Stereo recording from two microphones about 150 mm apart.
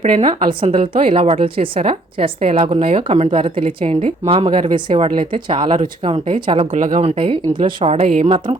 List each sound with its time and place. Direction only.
0.0 s a woman's voice: 45° right (ahead or behind)
6.7 s speech: 55° right (ahead or behind)
7.0 s a woman's voice: 35° right (ahead or behind)